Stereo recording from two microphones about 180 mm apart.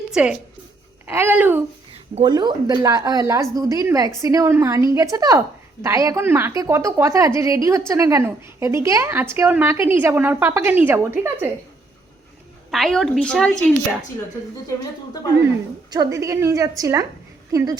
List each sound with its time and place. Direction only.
0.1 s a woman's voice: 5° right (ahead or behind)
2.1 s a woman's voice: 25° right (ahead or behind)
12.7 s a woman's voice: centre (ahead or behind)
15.9 s a woman's voice: 20° right (ahead or behind)